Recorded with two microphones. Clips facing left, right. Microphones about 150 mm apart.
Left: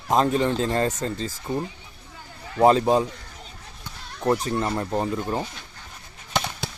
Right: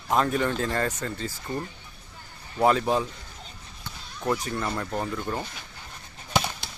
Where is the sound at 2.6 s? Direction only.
30° left (ahead or behind).